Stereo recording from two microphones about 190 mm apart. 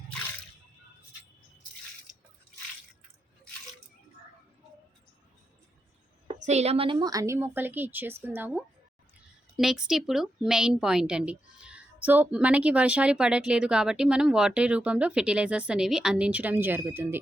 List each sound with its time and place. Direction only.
6.2 s a woman's voice: 35° right (ahead or behind); by 17.2 s 10° right (ahead or behind)